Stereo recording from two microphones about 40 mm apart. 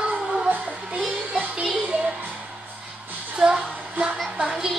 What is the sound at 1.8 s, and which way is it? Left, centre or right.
Music, right.